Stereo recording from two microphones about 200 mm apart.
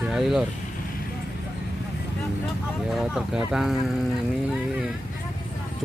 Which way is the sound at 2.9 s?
Centre (ahead or behind).